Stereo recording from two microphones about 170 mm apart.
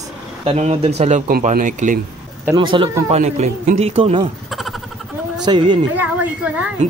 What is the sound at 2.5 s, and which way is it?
Speech, 30° right (ahead or behind).